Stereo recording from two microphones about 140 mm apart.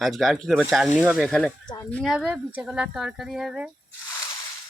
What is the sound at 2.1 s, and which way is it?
A woman's voice, 10° right (ahead or behind).